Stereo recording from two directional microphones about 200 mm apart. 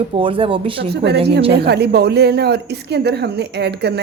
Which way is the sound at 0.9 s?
55° right (ahead or behind).